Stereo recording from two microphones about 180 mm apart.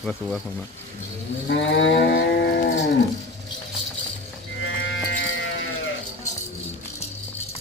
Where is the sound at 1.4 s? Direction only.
80° left; by 2.7 s 65° left (ahead or behind).